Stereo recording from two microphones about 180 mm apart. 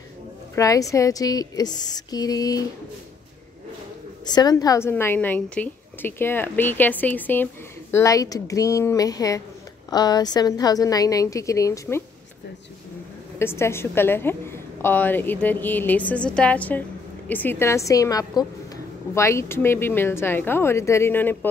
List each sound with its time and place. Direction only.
0.6 s a woman's voice: 20° left (ahead or behind)
4.3 s a woman's voice: 20° left (ahead or behind)
13.4 s a woman's voice: 15° left (ahead or behind)